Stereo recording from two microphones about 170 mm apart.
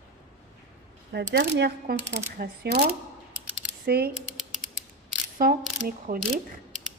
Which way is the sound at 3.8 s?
65° right (ahead or behind).